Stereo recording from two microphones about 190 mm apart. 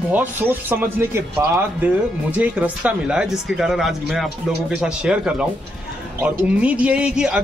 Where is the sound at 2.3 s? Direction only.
10° right (ahead or behind).